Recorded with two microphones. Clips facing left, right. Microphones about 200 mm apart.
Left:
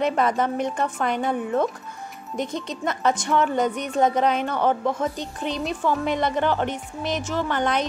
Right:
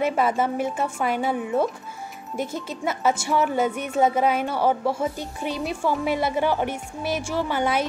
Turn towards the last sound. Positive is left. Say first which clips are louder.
# even
turn(degrees=-10)  # may be behind; listen again after turning